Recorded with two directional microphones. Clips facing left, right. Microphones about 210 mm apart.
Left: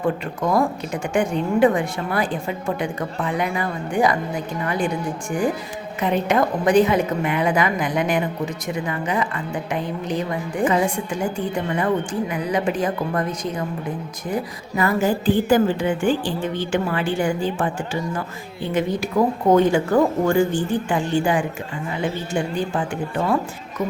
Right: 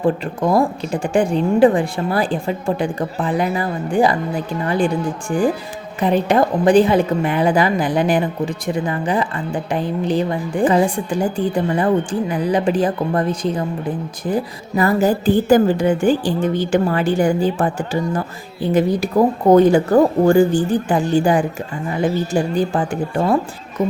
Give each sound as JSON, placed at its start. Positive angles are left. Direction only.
{"t": 0.0, "sound": "a woman's voice", "side_deg": -30}
{"t": 6.0, "sound": "a woman's voice", "side_deg": -35}